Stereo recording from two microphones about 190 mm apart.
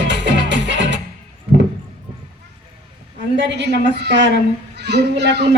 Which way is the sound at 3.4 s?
65° right (ahead or behind).